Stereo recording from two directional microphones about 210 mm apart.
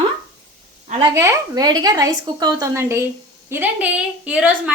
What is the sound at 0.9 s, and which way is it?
A woman's voice, 25° right (ahead or behind).